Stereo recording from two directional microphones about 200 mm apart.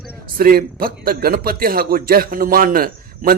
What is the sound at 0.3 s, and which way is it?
A man's voice, 45° right (ahead or behind).